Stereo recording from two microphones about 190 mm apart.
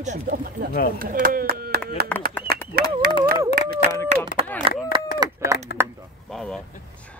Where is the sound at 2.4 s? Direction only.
10° left (ahead or behind).